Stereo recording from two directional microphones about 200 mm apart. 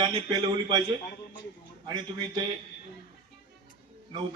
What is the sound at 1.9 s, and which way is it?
Speech, 20° right (ahead or behind).